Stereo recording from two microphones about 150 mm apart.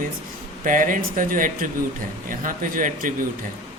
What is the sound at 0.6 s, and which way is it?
Speech, 60° right (ahead or behind).